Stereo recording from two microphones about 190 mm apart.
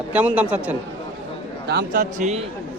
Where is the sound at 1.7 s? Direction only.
55° right (ahead or behind).